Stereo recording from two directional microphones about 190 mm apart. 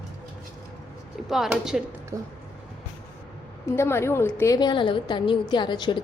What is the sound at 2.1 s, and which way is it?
Speech, 15° right (ahead or behind).